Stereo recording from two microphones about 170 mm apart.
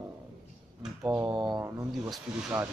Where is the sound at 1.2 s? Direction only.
25° right (ahead or behind).